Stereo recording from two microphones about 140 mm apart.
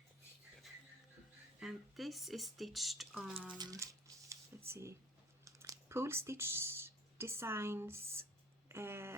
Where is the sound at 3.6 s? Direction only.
25° right (ahead or behind).